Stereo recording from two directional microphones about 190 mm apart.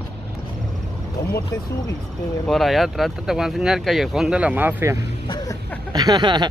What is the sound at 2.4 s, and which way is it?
Speech, centre (ahead or behind).